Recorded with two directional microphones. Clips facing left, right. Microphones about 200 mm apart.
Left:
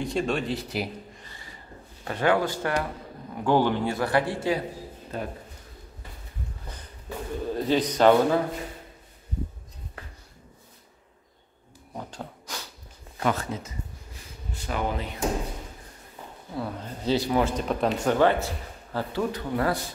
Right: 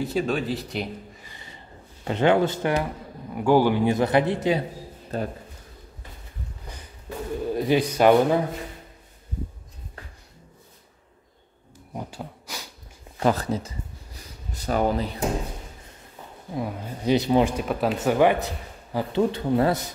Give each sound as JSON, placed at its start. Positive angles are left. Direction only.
{"t": 0.0, "sound": "speech", "side_deg": -5}
{"t": 1.2, "sound": "a sound", "side_deg": -20}
{"t": 2.0, "sound": "speech", "side_deg": -25}
{"t": 3.3, "sound": "speech", "side_deg": -10}
{"t": 5.1, "sound": "speech", "side_deg": -35}
{"t": 7.4, "sound": "a man's voice", "side_deg": -10}
{"t": 11.9, "sound": "a sound", "side_deg": -10}
{"t": 13.2, "sound": "speech", "side_deg": -35}
{"t": 16.5, "sound": "speech", "side_deg": -10}